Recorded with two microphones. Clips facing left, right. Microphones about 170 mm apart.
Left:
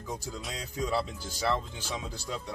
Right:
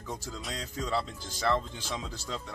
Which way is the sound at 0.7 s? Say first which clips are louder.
Left 2 dB; 10° left (ahead or behind).